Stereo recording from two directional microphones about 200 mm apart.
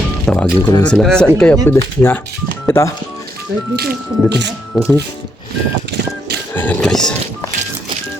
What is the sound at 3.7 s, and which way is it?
Speech, 55° right (ahead or behind).